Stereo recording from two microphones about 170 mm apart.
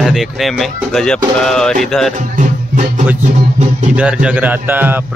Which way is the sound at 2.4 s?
50° right (ahead or behind).